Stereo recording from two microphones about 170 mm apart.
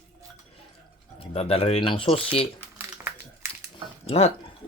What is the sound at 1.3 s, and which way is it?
Speech, 35° left (ahead or behind).